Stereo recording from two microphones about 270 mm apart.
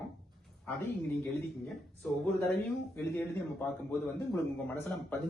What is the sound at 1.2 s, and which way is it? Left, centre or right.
A man's voice, centre.